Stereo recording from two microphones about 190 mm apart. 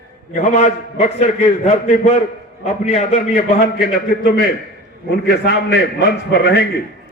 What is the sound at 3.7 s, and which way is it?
A man's voice, 50° left (ahead or behind).